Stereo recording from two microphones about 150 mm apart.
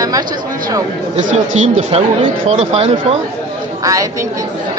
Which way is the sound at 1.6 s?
45° right (ahead or behind).